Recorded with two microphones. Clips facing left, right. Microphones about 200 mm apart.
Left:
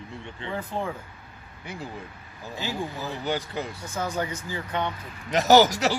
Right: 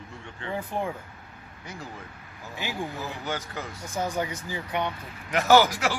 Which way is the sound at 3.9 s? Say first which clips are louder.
Right 1 dB; 15° right (ahead or behind).